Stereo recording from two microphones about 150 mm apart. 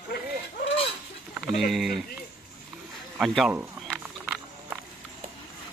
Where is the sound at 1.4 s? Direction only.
Centre (ahead or behind).